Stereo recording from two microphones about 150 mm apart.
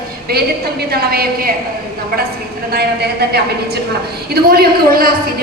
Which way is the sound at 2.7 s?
90° right.